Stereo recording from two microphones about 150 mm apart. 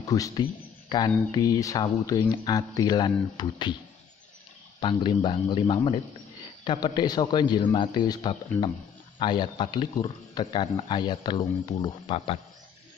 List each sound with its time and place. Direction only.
0.0 s a man's voice: 20° left (ahead or behind)
4.7 s speech: 30° left (ahead or behind)